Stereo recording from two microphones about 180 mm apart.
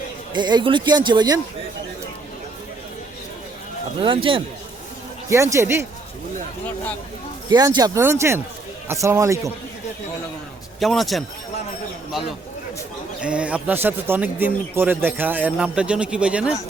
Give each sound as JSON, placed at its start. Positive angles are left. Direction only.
{"t": 0.3, "sound": "speech", "side_deg": -25}
{"t": 4.0, "sound": "speech", "side_deg": -30}
{"t": 5.3, "sound": "a man's voice", "side_deg": -15}
{"t": 7.5, "sound": "a man's voice", "side_deg": -20}
{"t": 10.8, "sound": "a man's voice", "side_deg": 0}
{"t": 13.2, "sound": "a man's voice", "side_deg": -5}